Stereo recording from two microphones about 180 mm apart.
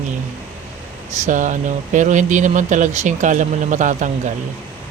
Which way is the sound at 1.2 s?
45° right (ahead or behind).